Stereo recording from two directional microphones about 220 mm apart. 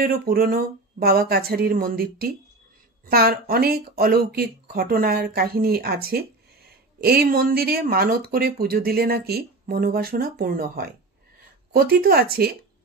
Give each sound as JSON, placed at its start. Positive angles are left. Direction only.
{"t": 0.0, "sound": "speech", "side_deg": -40}